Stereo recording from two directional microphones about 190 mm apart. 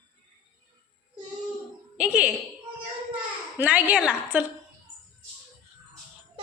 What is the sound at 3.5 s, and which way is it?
Speech, 10° right (ahead or behind).